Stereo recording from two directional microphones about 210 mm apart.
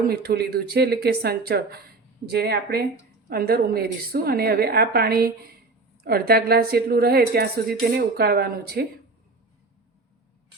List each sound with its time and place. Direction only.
0.1 s a woman's voice: 50° right (ahead or behind)